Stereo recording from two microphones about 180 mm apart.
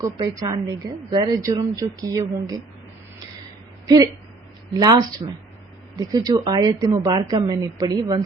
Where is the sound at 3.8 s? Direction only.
20° right (ahead or behind).